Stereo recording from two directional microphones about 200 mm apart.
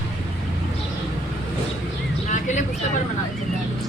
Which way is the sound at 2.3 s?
35° left (ahead or behind).